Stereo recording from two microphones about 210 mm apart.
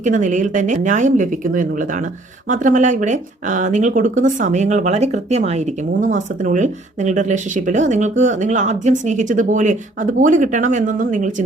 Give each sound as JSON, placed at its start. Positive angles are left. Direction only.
{"t": 0.0, "sound": "speech", "side_deg": -35}